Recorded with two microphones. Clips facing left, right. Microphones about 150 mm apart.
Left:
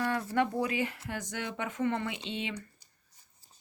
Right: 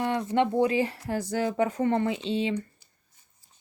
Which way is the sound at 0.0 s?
20° right (ahead or behind).